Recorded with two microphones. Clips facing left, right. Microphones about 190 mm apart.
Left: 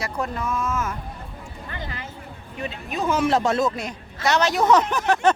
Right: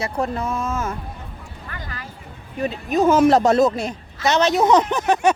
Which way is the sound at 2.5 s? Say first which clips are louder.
Right 9 dB; 40° right (ahead or behind).